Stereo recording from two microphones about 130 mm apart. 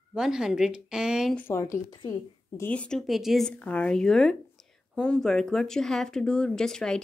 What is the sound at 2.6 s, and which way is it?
Speech, 10° left (ahead or behind).